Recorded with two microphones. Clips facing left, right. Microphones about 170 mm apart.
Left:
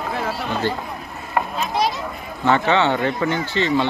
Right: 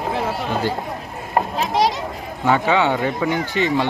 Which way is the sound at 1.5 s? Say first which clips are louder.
Right 4 dB; 90° right.